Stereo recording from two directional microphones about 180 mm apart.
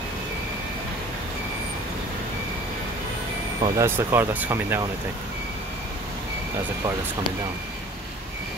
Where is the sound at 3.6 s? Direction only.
15° right (ahead or behind).